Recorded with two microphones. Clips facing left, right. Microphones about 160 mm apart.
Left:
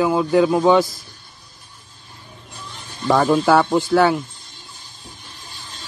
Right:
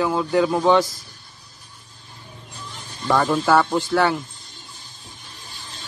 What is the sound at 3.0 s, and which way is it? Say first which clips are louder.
Speech: left 4 dB; 20° left (ahead or behind).